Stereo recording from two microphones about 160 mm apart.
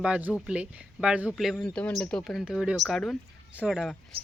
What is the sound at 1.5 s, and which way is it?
Speech, 5° left (ahead or behind).